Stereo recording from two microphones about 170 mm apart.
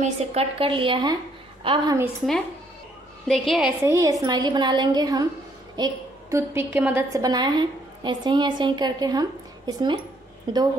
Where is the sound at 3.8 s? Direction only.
20° right (ahead or behind).